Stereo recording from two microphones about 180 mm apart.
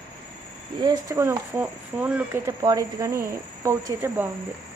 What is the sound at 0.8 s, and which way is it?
Speech, 20° right (ahead or behind).